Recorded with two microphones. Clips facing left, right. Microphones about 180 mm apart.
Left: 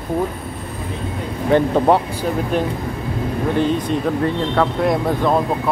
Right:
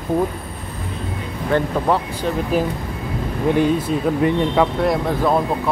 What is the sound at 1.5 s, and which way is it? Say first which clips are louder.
Speech: left 4 dB; 25° left (ahead or behind).